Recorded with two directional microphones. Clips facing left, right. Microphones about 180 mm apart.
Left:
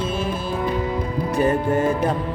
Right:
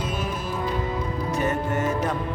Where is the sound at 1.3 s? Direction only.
30° left (ahead or behind).